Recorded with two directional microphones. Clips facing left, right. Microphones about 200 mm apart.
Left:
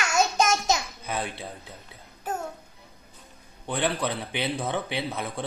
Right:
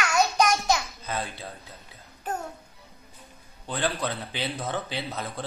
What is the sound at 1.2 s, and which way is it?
Speech, 15° left (ahead or behind).